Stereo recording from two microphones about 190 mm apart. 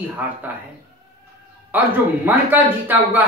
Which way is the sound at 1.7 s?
10° right (ahead or behind).